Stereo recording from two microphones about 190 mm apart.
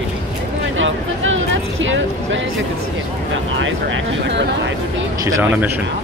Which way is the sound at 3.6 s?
80° right.